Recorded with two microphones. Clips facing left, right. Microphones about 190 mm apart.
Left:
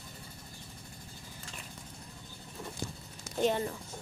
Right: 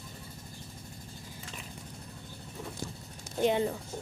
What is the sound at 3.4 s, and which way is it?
Speech, 15° right (ahead or behind).